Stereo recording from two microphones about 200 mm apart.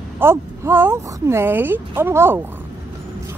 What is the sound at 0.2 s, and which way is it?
Speech, 10° right (ahead or behind).